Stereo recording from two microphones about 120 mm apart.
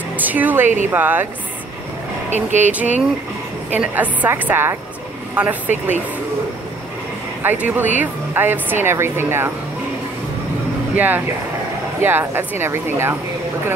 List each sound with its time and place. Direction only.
0.2 s a woman's voice: 15° right (ahead or behind)
2.6 s a woman's voice: 15° right (ahead or behind)
7.4 s a woman's voice: 15° right (ahead or behind)
11.0 s a woman's voice: 15° right (ahead or behind)